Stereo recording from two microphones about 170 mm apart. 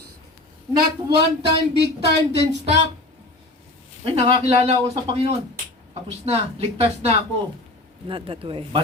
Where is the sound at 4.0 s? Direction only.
35° right (ahead or behind).